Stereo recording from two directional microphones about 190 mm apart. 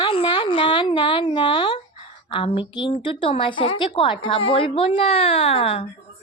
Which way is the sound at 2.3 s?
25° left (ahead or behind).